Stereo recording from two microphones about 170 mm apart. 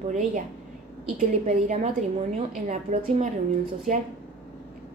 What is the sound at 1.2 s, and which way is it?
A woman's voice, 45° right (ahead or behind).